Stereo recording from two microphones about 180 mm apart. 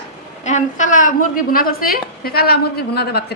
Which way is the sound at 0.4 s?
45° left (ahead or behind).